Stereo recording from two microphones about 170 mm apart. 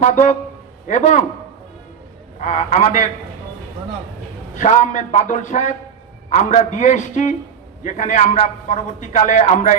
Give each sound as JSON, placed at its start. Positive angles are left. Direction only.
{"t": 0.0, "sound": "a man's voice", "side_deg": 45}
{"t": 2.4, "sound": "a man's voice", "side_deg": 45}
{"t": 4.5, "sound": "a man's voice", "side_deg": 45}